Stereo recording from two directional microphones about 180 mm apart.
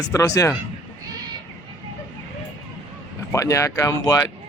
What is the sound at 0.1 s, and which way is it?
Speech, 15° left (ahead or behind).